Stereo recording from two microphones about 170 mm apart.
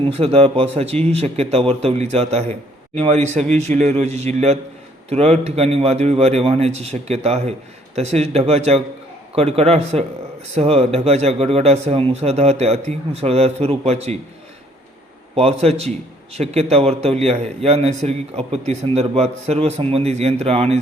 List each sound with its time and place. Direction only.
0.0 s a man's voice: 35° right (ahead or behind)
15.4 s a man's voice: 35° right (ahead or behind)